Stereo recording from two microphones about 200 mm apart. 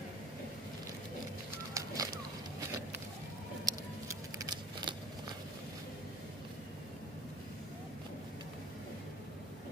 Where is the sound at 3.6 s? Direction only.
15° right (ahead or behind).